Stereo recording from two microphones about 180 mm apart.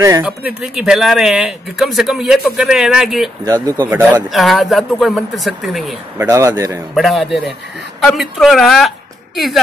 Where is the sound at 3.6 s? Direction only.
15° right (ahead or behind).